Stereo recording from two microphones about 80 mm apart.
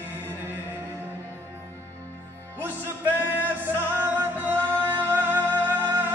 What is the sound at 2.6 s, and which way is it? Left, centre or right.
Music, right.